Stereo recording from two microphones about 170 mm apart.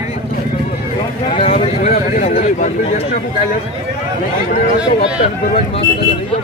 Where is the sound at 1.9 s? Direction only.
50° left (ahead or behind).